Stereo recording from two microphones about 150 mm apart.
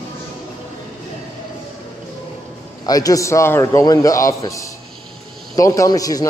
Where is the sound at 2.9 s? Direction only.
25° left (ahead or behind).